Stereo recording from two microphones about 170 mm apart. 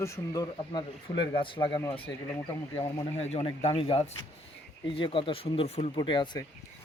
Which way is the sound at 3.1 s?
40° left (ahead or behind).